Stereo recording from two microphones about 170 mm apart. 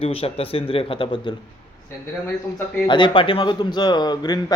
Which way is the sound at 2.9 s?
30° left (ahead or behind).